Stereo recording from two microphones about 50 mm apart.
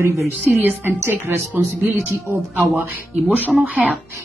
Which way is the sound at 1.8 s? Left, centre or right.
Right.